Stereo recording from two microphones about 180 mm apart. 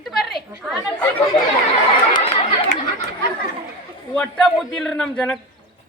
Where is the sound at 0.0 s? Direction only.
Centre (ahead or behind).